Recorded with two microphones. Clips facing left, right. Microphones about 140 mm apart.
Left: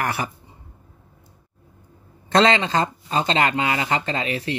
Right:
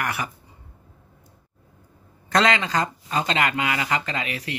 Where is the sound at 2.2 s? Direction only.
30° left (ahead or behind).